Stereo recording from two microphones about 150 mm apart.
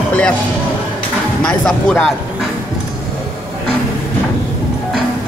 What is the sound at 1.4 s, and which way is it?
Speech, 5° left (ahead or behind).